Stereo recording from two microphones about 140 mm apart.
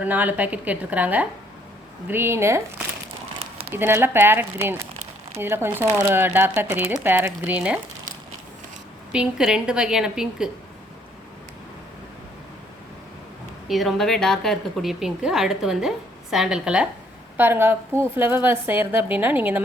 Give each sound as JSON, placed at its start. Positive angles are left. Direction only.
{"t": 0.0, "sound": "speech", "side_deg": -10}
{"t": 9.1, "sound": "a woman's voice", "side_deg": -5}
{"t": 13.7, "sound": "a woman's voice", "side_deg": 0}